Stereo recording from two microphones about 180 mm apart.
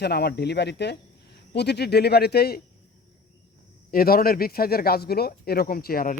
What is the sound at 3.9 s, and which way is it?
Speech, 55° left (ahead or behind).